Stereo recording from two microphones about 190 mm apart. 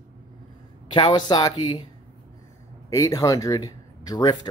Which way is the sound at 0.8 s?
25° left (ahead or behind).